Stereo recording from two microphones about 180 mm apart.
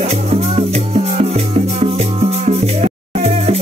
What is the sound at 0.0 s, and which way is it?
Music, 35° right (ahead or behind).